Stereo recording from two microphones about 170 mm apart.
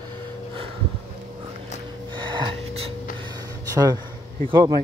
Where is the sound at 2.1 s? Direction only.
25° right (ahead or behind).